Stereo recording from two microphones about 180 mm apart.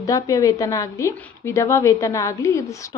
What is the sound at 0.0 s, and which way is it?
A woman's voice, 20° left (ahead or behind).